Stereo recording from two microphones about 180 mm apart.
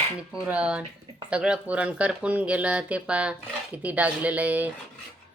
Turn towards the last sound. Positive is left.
turn(degrees=-10)  # may be behind; listen again after turning